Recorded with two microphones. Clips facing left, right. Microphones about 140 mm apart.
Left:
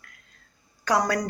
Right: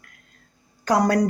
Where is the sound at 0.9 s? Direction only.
50° right (ahead or behind).